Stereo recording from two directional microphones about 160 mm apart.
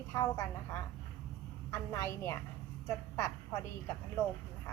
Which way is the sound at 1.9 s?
20° left (ahead or behind).